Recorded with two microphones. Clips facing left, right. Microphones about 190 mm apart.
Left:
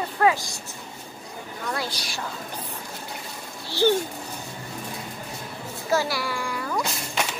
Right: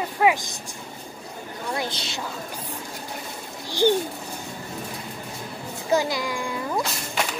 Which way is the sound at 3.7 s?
15° right (ahead or behind).